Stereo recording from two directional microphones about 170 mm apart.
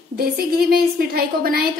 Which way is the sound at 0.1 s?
60° right (ahead or behind).